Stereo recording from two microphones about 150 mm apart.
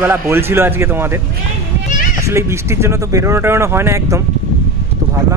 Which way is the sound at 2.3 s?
15° right (ahead or behind).